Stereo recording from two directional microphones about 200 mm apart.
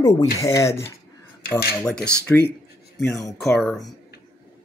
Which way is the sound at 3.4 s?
Centre (ahead or behind).